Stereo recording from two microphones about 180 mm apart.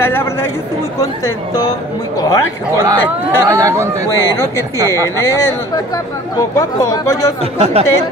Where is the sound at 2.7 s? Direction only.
20° right (ahead or behind).